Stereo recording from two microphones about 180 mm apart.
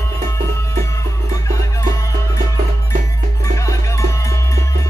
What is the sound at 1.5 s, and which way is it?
Music, 15° left (ahead or behind).